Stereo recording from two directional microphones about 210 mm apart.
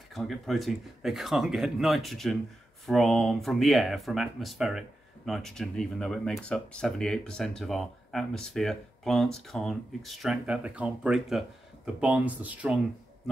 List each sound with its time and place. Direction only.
0.1 s speech: centre (ahead or behind)